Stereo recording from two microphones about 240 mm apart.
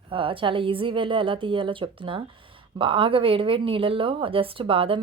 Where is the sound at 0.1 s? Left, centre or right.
Right.